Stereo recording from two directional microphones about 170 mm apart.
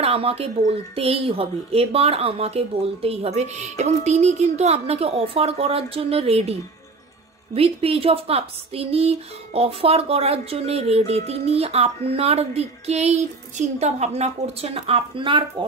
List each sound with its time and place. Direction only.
0.0 s speech: 35° right (ahead or behind)